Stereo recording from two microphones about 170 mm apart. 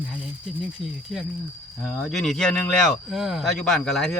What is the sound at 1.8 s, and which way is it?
Speech, 5° left (ahead or behind).